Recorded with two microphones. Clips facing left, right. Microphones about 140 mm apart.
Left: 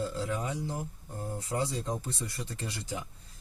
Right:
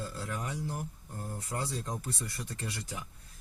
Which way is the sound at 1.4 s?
20° left (ahead or behind).